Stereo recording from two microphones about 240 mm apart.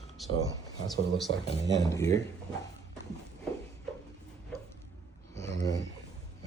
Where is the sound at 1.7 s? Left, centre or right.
Centre.